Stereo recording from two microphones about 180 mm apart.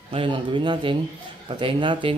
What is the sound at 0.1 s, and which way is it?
A man's voice, 30° right (ahead or behind).